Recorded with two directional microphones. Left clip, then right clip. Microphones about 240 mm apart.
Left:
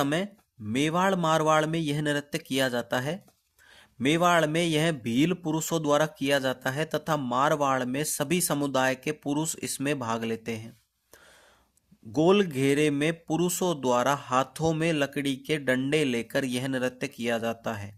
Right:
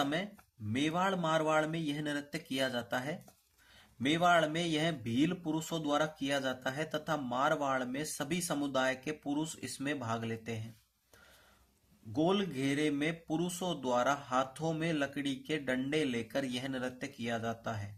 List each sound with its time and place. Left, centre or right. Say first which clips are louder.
0.0 s speech: left 7 dB; left
12.1 s speech: left 9 dB; left